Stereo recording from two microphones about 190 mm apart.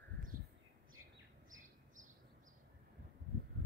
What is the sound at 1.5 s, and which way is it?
Bird, 40° right (ahead or behind).